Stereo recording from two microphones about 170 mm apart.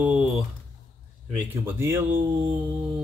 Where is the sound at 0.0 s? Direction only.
5° right (ahead or behind).